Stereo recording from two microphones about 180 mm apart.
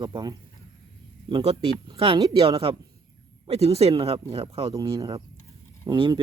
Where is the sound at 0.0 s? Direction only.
25° right (ahead or behind).